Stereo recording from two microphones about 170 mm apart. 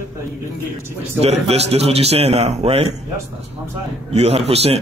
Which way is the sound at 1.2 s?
35° right (ahead or behind).